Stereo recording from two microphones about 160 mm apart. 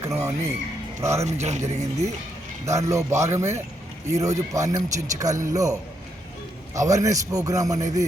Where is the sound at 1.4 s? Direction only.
45° right (ahead or behind).